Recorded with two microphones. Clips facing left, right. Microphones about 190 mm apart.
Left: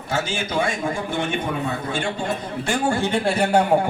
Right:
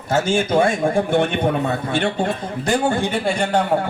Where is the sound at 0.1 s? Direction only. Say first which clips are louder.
Right 7 dB; 50° right (ahead or behind).